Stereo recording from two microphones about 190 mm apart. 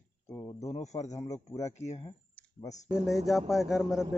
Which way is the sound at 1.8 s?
30° left (ahead or behind).